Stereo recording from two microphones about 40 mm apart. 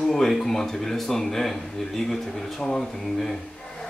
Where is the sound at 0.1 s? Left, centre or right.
Centre.